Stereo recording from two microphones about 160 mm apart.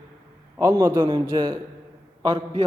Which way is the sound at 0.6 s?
20° right (ahead or behind).